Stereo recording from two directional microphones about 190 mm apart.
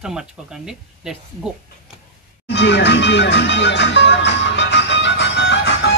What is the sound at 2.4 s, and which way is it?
Speech, 65° left (ahead or behind).